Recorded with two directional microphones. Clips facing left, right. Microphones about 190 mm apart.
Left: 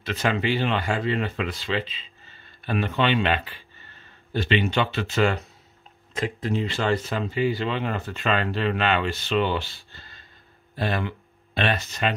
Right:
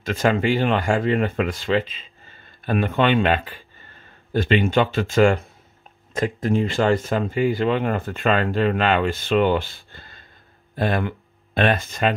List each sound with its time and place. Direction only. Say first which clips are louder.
0.0 s speech: right 5 dB; 45° right (ahead or behind)